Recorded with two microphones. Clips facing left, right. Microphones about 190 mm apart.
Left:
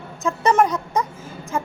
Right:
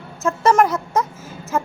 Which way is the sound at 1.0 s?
5° right (ahead or behind).